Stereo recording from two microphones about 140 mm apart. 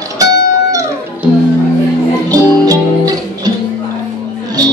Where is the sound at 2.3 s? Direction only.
25° right (ahead or behind).